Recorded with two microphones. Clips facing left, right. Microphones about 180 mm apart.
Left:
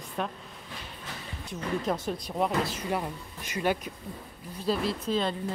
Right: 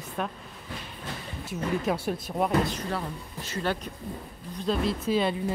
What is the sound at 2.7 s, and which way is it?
Speech, 10° left (ahead or behind).